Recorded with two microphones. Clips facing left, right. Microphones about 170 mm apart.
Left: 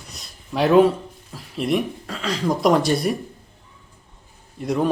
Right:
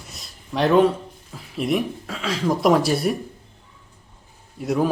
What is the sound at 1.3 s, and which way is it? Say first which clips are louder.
Speech: even; centre (ahead or behind).